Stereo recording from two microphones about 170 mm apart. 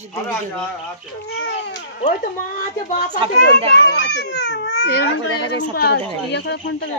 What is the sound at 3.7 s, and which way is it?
A child's voice, 85° left.